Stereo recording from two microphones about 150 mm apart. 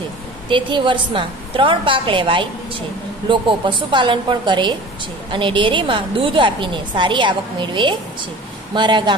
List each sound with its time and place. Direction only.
0.5 s a woman's voice: 30° right (ahead or behind)